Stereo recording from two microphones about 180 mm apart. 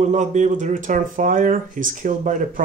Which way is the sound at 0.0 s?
40° right (ahead or behind).